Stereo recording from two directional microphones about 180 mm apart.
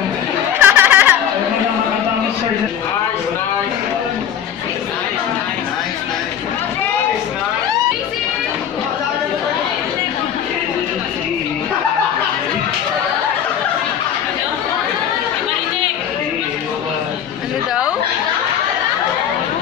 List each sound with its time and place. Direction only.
0.6 s chatter: 10° right (ahead or behind)